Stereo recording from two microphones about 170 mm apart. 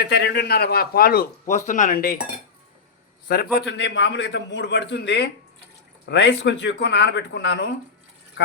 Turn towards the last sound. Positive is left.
turn(degrees=90)